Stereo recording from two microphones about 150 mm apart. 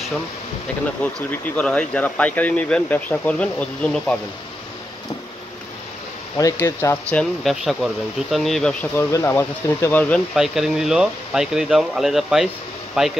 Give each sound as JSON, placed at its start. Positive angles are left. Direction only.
{"t": 1.0, "sound": "speech", "side_deg": 10}
{"t": 6.3, "sound": "speech", "side_deg": 20}
{"t": 8.9, "sound": "speech", "side_deg": 15}
{"t": 10.3, "sound": "speech", "side_deg": 0}